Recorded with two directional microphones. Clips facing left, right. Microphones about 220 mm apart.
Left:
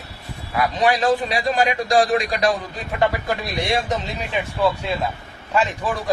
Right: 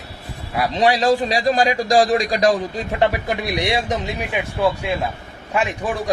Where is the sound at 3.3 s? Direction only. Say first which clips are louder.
Right 2 dB; 15° right (ahead or behind).